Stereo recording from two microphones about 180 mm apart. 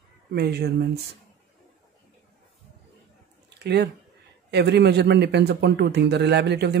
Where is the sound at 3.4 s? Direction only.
70° right (ahead or behind).